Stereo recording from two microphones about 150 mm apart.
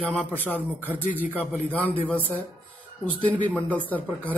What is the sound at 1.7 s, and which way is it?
Speech, 10° left (ahead or behind).